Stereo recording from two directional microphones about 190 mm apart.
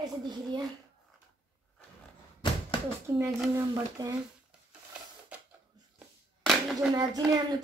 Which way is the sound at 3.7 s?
20° right (ahead or behind).